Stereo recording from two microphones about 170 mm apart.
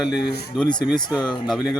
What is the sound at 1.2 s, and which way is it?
Speech, centre (ahead or behind).